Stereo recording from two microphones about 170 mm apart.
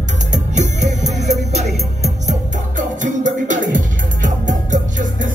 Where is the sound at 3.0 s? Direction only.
50° right (ahead or behind).